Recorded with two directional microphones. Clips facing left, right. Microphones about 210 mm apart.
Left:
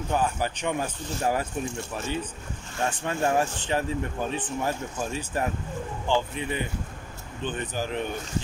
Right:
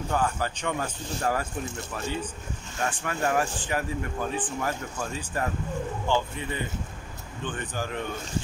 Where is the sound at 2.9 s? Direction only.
25° left (ahead or behind).